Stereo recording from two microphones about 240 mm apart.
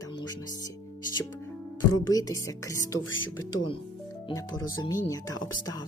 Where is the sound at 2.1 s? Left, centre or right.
Centre.